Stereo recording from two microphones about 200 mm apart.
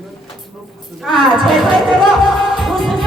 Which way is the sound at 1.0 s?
Centre (ahead or behind).